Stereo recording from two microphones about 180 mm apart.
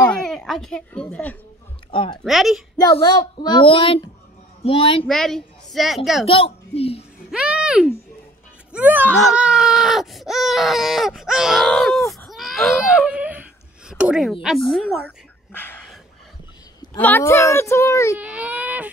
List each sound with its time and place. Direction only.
0.2 s speech: 5° left (ahead or behind)
1.9 s speech: 30° left (ahead or behind)
2.2 s a woman's voice: centre (ahead or behind)
2.8 s a woman's voice: 20° left (ahead or behind)
5.0 s speech: centre (ahead or behind)
6.2 s a woman's voice: 30° left (ahead or behind)
7.2 s a sound: 5° right (ahead or behind)
8.7 s speech: 10° right (ahead or behind); by 15.8 s 10° left (ahead or behind)
17.0 s speech: 10° left (ahead or behind)
18.2 s baby cry: 10° right (ahead or behind)